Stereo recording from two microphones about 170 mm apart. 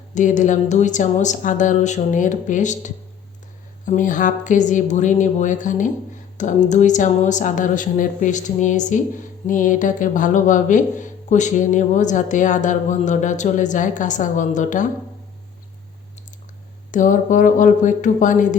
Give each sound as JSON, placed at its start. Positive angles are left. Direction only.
{"t": 0.1, "sound": "speech", "side_deg": 45}
{"t": 16.9, "sound": "speech", "side_deg": 50}